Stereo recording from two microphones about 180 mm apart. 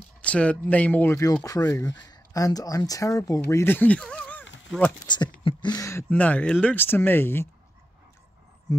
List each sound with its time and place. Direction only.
0.2 s speech: 5° left (ahead or behind)
5.0 s speech: 25° left (ahead or behind)